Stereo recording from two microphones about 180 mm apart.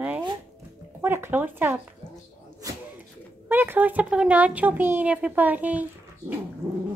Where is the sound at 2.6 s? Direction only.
20° right (ahead or behind).